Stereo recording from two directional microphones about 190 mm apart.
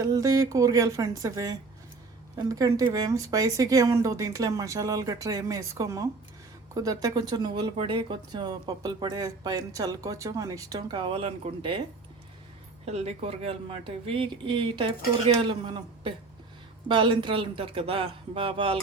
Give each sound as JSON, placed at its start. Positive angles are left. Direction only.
{"t": 0.0, "sound": "speech", "side_deg": -20}
{"t": 12.8, "sound": "speech", "side_deg": -35}